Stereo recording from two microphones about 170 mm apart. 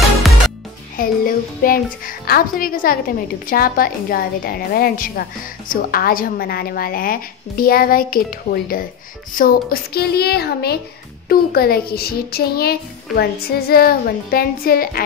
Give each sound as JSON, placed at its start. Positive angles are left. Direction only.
{"t": 0.9, "sound": "a child's voice", "side_deg": 60}